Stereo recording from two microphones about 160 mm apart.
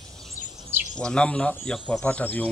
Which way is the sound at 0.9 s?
5° left (ahead or behind).